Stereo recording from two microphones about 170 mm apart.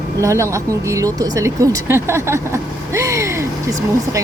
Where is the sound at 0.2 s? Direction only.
15° right (ahead or behind).